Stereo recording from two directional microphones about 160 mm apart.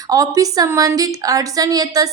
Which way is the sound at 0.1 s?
20° right (ahead or behind).